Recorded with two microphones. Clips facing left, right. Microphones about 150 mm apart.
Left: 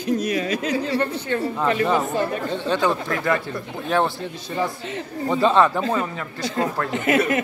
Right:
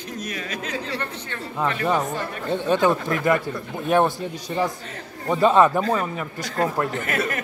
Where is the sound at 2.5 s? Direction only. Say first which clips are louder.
Right 4 dB; 15° right (ahead or behind).